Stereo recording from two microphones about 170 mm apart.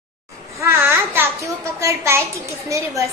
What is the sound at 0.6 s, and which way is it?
A child's voice, 15° right (ahead or behind).